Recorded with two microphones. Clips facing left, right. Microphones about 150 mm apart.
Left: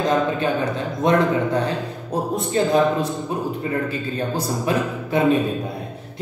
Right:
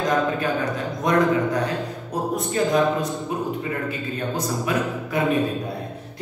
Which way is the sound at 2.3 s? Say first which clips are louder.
Left 2 dB; 30° left (ahead or behind).